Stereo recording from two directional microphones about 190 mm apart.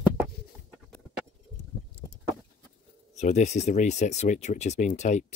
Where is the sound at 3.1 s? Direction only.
40° left (ahead or behind).